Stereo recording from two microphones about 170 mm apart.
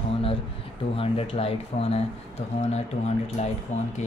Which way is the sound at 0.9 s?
35° left (ahead or behind).